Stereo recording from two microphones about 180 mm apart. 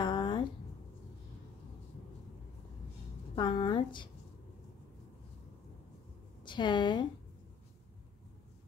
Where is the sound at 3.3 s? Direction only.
25° left (ahead or behind).